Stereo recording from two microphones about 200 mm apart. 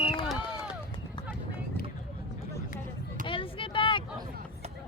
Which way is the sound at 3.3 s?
25° left (ahead or behind).